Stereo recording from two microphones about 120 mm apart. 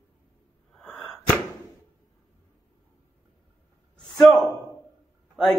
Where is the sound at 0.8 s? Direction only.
5° left (ahead or behind).